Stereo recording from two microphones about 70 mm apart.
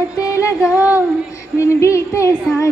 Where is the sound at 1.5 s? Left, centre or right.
Left.